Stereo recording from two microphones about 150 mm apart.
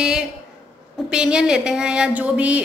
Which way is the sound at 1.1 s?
5° right (ahead or behind).